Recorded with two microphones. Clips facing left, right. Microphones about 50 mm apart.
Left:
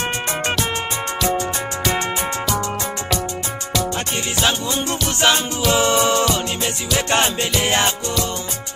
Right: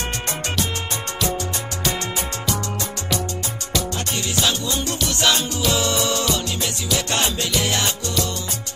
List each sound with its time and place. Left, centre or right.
4.4 s music: left